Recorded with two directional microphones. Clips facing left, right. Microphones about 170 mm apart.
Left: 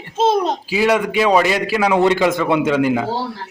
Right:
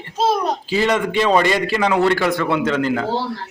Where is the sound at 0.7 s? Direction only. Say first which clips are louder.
Left 2 dB; 10° left (ahead or behind).